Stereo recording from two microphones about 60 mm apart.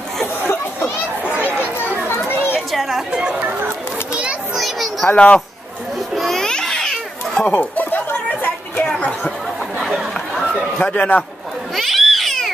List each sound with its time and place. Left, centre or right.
0.4 s a sound: left
2.0 s children playing: left
2.7 s chatter: centre
4.6 s a sound: centre
5.1 s speech: centre
6.1 s babbling: centre
7.7 s chatter: left
10.8 s speech: left
11.7 s cat: centre